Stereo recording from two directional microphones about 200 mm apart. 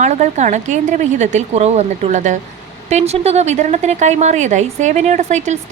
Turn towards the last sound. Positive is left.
turn(degrees=-35)  # may be behind; listen again after turning